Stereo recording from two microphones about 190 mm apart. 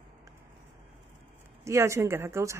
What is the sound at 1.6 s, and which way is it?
Speech, 15° right (ahead or behind).